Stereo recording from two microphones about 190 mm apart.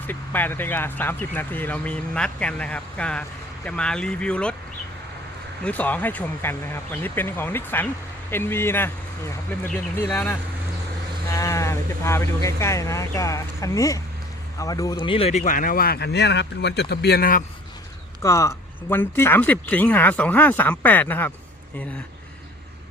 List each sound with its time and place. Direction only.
0.1 s speech: 10° left (ahead or behind)
5.6 s speech: 10° left (ahead or behind); by 17.4 s 50° left (ahead or behind)
18.2 s speech: 15° left (ahead or behind)